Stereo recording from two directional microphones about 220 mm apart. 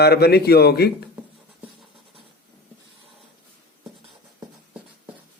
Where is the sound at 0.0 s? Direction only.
45° left (ahead or behind).